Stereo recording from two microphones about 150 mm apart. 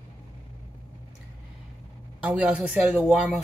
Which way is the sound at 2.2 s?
10° right (ahead or behind).